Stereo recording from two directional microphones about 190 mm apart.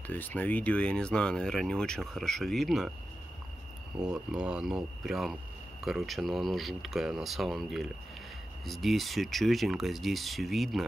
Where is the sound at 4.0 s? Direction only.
5° right (ahead or behind).